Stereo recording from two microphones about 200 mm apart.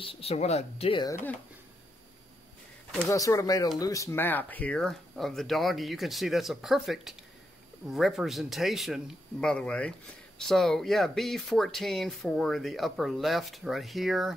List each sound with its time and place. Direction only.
0.0 s speech: 30° left (ahead or behind)
3.1 s speech: 15° left (ahead or behind); by 14.3 s centre (ahead or behind)